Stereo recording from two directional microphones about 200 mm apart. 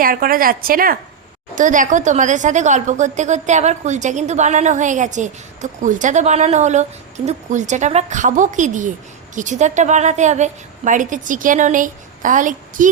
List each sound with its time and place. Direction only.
0.0 s a woman's voice: 45° right (ahead or behind)